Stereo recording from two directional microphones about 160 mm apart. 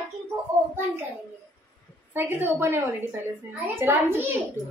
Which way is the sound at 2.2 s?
10° right (ahead or behind).